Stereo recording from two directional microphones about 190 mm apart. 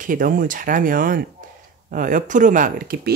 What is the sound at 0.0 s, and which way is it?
Speech, 45° right (ahead or behind).